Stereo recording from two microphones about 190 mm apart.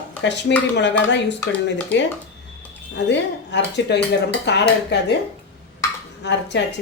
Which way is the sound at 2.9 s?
65° left (ahead or behind).